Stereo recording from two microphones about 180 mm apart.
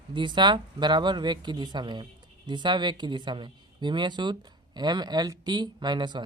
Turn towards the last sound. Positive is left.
turn(degrees=-25)  # may be behind; listen again after turning